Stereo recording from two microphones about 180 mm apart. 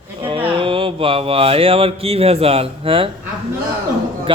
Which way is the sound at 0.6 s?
30° right (ahead or behind).